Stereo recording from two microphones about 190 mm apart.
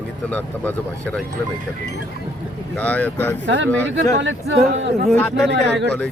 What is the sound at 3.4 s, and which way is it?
Speech, 75° right (ahead or behind).